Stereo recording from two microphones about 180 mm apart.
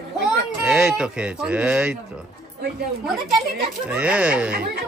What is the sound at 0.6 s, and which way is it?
Speech, 5° right (ahead or behind).